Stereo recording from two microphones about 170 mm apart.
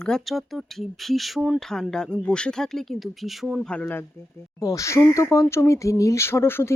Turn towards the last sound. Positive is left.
turn(degrees=15)  # may be behind; listen again after turning